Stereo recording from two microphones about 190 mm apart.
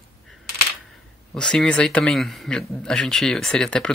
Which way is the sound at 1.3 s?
5° left (ahead or behind).